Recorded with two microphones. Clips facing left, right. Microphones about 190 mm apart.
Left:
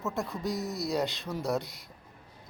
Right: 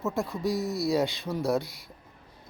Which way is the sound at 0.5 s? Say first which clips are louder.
Right 4 dB; 20° left (ahead or behind).